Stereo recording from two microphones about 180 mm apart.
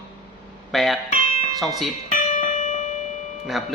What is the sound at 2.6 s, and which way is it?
Music, 40° left (ahead or behind).